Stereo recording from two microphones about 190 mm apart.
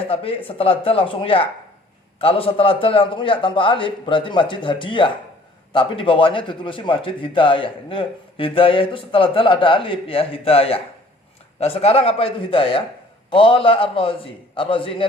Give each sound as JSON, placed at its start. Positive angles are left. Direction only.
{"t": 0.1, "sound": "speech", "side_deg": 30}